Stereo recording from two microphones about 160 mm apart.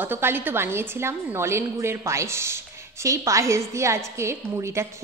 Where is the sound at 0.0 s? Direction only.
15° right (ahead or behind).